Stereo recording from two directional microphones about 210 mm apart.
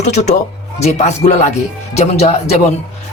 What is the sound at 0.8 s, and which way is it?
Speech, 30° left (ahead or behind).